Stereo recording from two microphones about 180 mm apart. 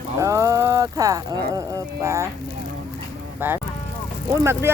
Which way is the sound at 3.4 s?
10° right (ahead or behind).